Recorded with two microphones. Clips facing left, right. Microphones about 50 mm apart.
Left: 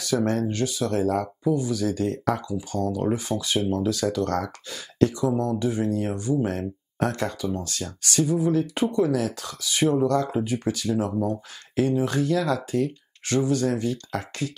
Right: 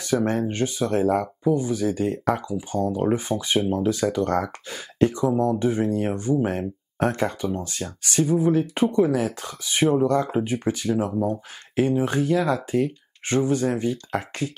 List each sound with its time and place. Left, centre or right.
0.0 s speech: right
6.4 s speech: right